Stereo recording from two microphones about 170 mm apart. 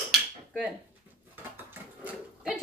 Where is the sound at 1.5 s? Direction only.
10° right (ahead or behind).